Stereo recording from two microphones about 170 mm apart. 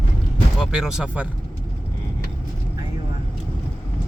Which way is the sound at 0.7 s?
5° right (ahead or behind).